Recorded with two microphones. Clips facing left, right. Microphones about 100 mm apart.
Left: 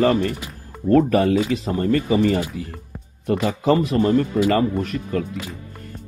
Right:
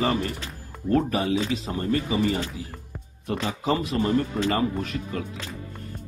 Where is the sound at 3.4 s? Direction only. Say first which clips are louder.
Left 7 dB; 55° left (ahead or behind).